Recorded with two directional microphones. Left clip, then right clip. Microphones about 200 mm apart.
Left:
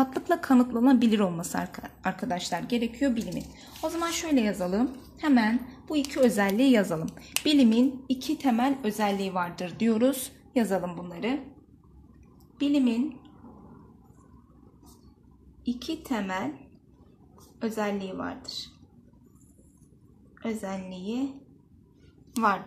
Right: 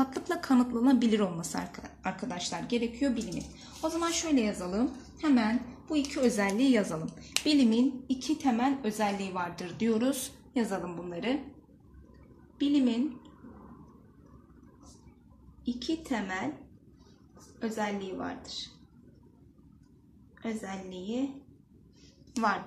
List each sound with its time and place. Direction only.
0.0 s a woman's voice: 35° left (ahead or behind); by 11.3 s 50° left (ahead or behind)
12.5 s a woman's voice: 45° left (ahead or behind)
15.6 s a woman's voice: 50° left (ahead or behind)
17.6 s a woman's voice: 45° left (ahead or behind)
20.4 s a woman's voice: 50° left (ahead or behind)